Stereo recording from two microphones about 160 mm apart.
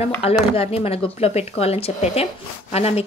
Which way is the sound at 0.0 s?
40° left (ahead or behind).